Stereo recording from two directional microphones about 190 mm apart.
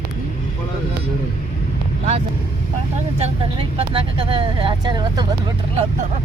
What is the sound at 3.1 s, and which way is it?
Speech, 30° right (ahead or behind).